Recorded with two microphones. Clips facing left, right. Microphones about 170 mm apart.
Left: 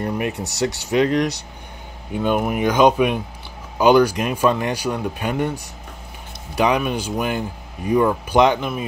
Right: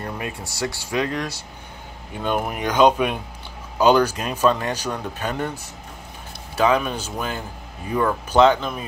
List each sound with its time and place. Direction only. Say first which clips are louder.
0.0 s a sound: left 7 dB; 20° left (ahead or behind)
0.5 s speech: left 5 dB; 20° left (ahead or behind)
2.2 s speech: left 4 dB; 5° left (ahead or behind)
6.5 s speech: left 1 dB; 15° left (ahead or behind)